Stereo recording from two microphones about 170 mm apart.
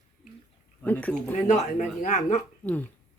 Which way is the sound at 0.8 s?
10° left (ahead or behind).